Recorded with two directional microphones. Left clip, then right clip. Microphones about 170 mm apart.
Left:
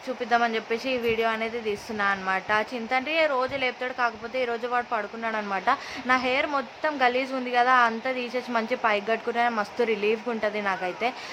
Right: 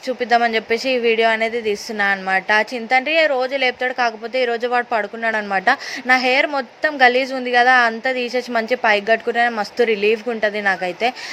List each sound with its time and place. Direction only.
0.2 s a woman's voice: 25° right (ahead or behind)